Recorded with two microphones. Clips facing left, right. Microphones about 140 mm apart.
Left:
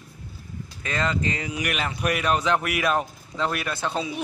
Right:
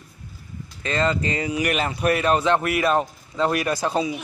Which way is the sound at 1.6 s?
35° right (ahead or behind).